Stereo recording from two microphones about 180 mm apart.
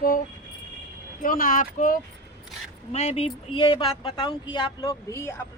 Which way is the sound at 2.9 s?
35° left (ahead or behind).